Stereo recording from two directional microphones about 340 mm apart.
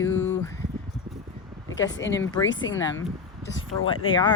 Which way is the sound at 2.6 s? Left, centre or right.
Left.